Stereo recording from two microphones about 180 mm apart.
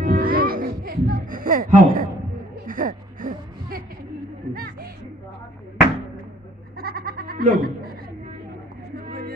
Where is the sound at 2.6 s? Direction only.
50° right (ahead or behind).